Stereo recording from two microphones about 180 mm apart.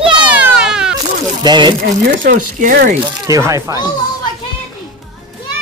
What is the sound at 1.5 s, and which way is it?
Speech, 25° right (ahead or behind).